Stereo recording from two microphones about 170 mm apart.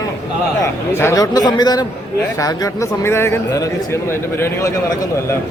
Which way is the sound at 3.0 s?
15° left (ahead or behind).